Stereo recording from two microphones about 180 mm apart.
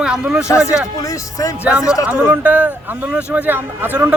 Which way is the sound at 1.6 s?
5° right (ahead or behind).